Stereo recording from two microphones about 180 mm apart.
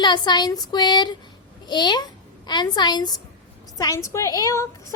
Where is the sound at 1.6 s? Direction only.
25° left (ahead or behind).